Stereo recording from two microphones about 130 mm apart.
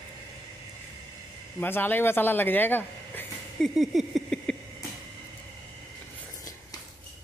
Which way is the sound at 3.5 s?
Centre (ahead or behind).